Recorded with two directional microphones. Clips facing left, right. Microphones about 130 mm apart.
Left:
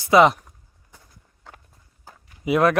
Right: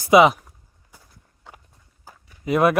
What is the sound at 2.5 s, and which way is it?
Speech, 10° left (ahead or behind).